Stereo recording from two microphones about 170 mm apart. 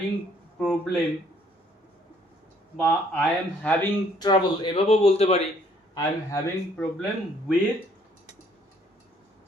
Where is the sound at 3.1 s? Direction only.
5° left (ahead or behind).